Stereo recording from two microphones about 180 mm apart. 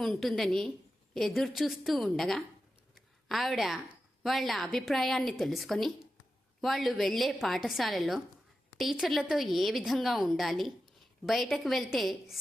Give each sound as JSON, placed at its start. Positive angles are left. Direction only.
{"t": 0.0, "sound": "a woman's voice", "side_deg": 0}
{"t": 2.9, "sound": "a sound", "side_deg": 0}
{"t": 4.2, "sound": "a woman's voice", "side_deg": 0}